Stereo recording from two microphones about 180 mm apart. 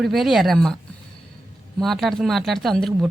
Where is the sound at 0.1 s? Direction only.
Centre (ahead or behind).